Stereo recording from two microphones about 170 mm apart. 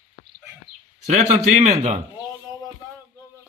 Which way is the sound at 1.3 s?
40° right (ahead or behind).